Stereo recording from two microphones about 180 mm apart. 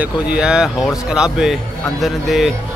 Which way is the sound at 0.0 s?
5° right (ahead or behind).